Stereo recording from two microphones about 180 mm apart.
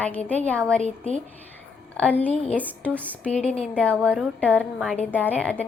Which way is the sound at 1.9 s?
10° left (ahead or behind).